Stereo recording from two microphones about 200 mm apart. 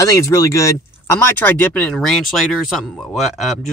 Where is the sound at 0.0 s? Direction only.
15° left (ahead or behind).